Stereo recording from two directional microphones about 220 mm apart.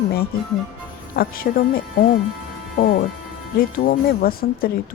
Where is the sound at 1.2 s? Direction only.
40° left (ahead or behind).